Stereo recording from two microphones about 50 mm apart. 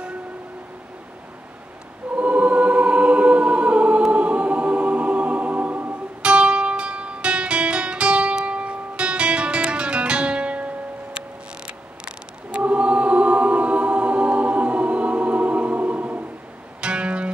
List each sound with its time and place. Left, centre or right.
2.1 s choir: right
6.2 s music: right
11.1 s choir: right
16.8 s music: right